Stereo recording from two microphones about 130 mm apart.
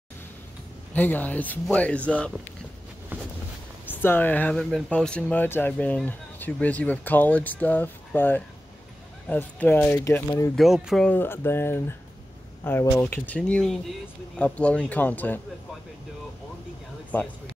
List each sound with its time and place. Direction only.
0.9 s speech: 15° left (ahead or behind)
3.8 s speech: 15° left (ahead or behind)
4.6 s speech: centre (ahead or behind)
4.9 s speech: 10° left (ahead or behind)
10.5 s speech: centre (ahead or behind)
11.1 s speech: 15° left (ahead or behind)
17.1 s speech: 15° left (ahead or behind)